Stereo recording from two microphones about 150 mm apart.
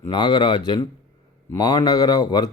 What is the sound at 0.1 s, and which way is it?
A man's voice, 30° left (ahead or behind).